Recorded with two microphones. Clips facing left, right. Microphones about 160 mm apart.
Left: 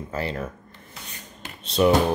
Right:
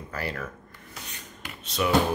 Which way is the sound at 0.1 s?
25° left (ahead or behind).